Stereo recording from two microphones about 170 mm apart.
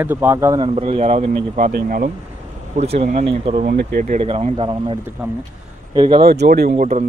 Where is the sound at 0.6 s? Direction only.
35° right (ahead or behind).